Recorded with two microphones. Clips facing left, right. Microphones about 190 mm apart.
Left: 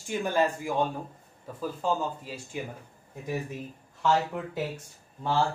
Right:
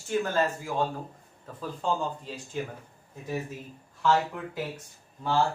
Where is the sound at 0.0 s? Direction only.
15° left (ahead or behind).